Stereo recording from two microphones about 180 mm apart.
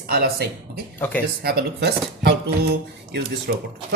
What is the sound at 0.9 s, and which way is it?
Speech, 10° left (ahead or behind).